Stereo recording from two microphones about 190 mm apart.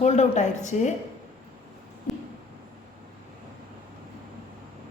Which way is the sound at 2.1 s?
Centre (ahead or behind).